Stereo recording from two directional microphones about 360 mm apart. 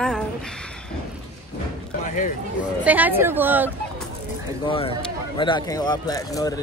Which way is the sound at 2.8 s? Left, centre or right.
Centre.